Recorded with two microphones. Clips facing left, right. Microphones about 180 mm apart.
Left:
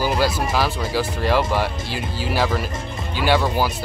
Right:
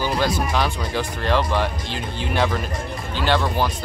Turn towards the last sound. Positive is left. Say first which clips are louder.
# left 2 dB
turn(degrees=10)  # may be behind; listen again after turning